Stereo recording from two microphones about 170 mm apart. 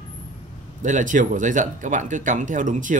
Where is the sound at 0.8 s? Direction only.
50° right (ahead or behind).